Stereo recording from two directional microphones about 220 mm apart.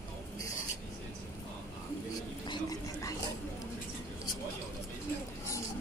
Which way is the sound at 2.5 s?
15° left (ahead or behind).